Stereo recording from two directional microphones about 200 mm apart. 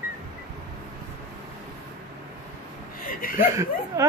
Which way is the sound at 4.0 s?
15° right (ahead or behind).